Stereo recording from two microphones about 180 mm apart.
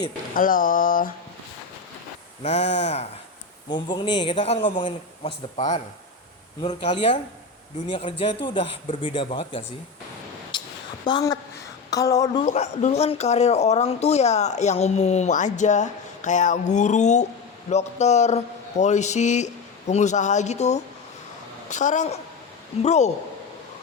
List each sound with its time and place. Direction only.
0.3 s speech: 50° left (ahead or behind)
2.4 s speech: 40° left (ahead or behind)
3.7 s speech: 25° left (ahead or behind)
10.5 s a sound: 25° left (ahead or behind)
11.0 s speech: 20° left (ahead or behind)
12.4 s speech: 40° left (ahead or behind)